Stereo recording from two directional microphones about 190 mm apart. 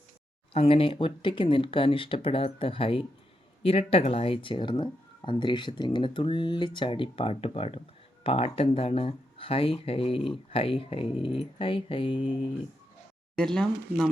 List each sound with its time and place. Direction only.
0.5 s speech: 30° left (ahead or behind)
13.3 s speech: 5° left (ahead or behind)